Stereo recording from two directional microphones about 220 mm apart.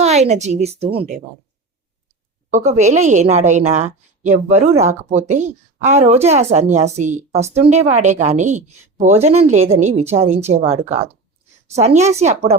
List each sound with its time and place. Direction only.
0.0 s a woman's voice: 30° right (ahead or behind)
2.5 s speech: 30° right (ahead or behind)